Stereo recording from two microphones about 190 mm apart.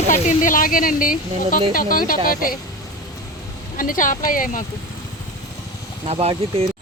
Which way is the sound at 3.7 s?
45° left (ahead or behind).